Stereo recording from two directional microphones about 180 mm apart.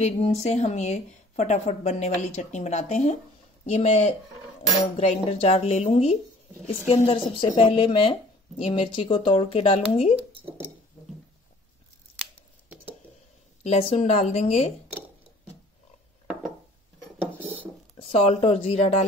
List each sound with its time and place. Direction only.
0.0 s speech: 35° left (ahead or behind)
13.7 s speech: 35° left (ahead or behind)
17.4 s a sound: 10° right (ahead or behind)
17.9 s speech: 35° left (ahead or behind)